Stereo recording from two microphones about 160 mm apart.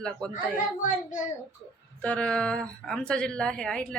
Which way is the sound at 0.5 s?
55° left (ahead or behind).